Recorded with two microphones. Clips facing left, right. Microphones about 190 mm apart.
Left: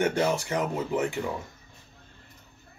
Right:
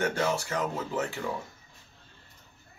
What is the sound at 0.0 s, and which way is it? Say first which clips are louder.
Speech: left 3 dB; 15° left (ahead or behind).